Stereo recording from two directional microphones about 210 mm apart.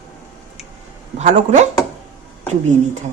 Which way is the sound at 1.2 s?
35° right (ahead or behind).